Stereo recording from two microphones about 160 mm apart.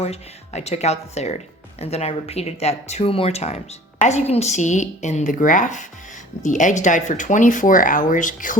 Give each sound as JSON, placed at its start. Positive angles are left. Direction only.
{"t": 0.0, "sound": "speech", "side_deg": 45}